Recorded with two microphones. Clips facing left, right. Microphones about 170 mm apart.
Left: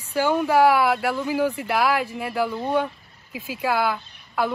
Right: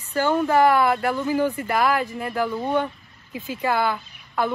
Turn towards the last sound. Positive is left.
turn(degrees=5)  # may be behind; listen again after turning